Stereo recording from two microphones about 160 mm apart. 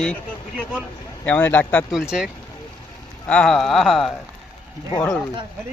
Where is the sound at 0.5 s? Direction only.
5° right (ahead or behind).